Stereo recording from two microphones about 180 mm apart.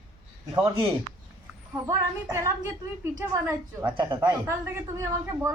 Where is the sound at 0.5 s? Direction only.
25° right (ahead or behind).